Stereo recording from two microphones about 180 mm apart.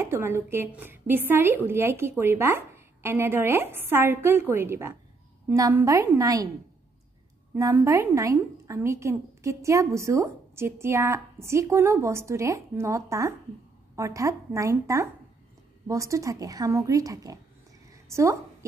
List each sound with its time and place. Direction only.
0.0 s a woman's voice: 15° right (ahead or behind)
7.5 s a woman's voice: 15° right (ahead or behind)